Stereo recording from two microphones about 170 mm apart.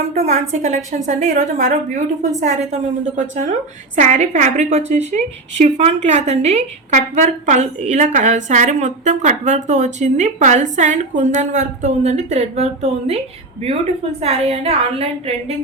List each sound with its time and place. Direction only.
0.1 s a woman's voice: 40° right (ahead or behind)
14.2 s a woman's voice: 35° right (ahead or behind)